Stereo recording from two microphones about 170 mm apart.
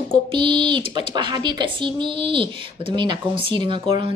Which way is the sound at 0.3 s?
30° right (ahead or behind).